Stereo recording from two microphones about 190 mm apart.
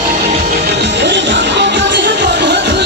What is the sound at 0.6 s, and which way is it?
Music, 65° right (ahead or behind).